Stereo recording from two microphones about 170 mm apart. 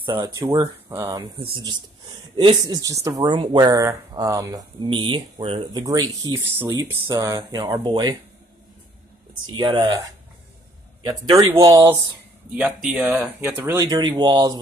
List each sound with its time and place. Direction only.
0.0 s speech: 25° right (ahead or behind)
9.5 s speech: 25° right (ahead or behind)
12.5 s speech: centre (ahead or behind)
13.8 s speech: 25° right (ahead or behind)